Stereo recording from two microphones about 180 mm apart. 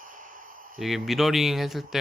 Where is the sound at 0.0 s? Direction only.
50° right (ahead or behind).